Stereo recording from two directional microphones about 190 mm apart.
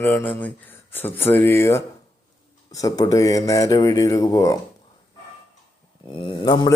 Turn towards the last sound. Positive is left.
turn(degrees=20)  # may be behind; listen again after turning